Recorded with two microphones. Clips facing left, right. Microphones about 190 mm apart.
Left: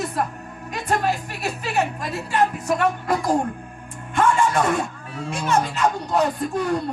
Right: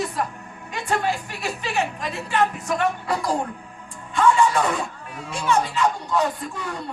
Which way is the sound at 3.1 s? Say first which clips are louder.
Left 3 dB; 50° left (ahead or behind).